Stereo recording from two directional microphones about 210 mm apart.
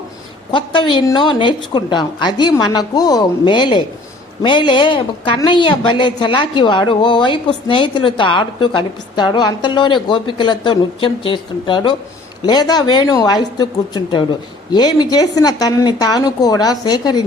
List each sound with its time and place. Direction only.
0.5 s a woman's voice: 20° left (ahead or behind)